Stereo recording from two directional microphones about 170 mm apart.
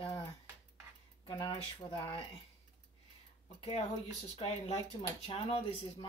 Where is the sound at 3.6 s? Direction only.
35° left (ahead or behind).